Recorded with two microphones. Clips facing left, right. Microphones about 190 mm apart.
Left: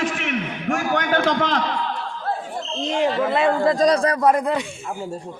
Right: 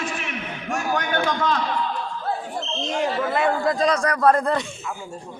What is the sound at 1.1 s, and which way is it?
Speech, 80° left.